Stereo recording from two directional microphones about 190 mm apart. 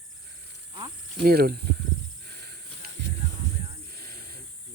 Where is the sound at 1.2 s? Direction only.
55° right (ahead or behind).